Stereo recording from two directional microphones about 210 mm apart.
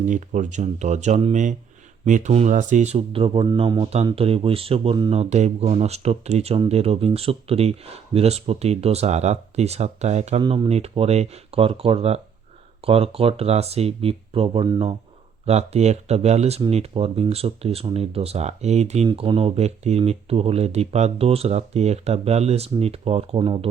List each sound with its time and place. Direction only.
0.0 s speech: 35° right (ahead or behind)